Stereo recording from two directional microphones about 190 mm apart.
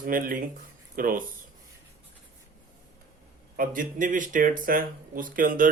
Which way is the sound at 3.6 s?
45° right (ahead or behind).